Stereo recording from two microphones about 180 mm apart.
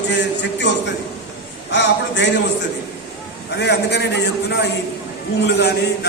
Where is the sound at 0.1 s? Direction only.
80° left.